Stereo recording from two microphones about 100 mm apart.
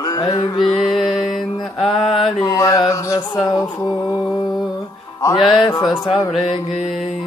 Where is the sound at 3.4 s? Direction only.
45° left (ahead or behind).